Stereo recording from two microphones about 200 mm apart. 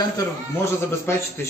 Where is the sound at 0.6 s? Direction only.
15° left (ahead or behind).